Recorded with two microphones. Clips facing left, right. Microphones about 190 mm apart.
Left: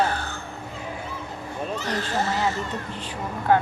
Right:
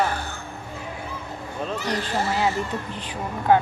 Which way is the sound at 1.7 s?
10° right (ahead or behind).